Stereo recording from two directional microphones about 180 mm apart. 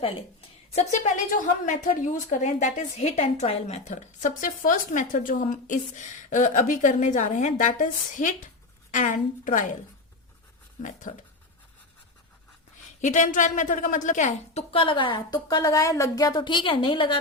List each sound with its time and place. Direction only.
0.0 s a woman's voice: 35° left (ahead or behind)
11.1 s a woman's voice: 50° left (ahead or behind)
13.0 s a woman's voice: 40° left (ahead or behind); by 17.2 s 25° left (ahead or behind)